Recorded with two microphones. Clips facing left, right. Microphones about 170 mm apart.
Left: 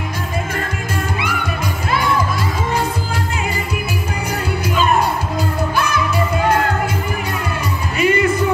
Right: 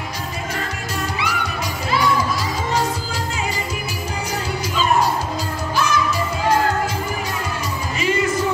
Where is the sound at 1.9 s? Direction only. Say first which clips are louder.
Left 1 dB; 55° left (ahead or behind).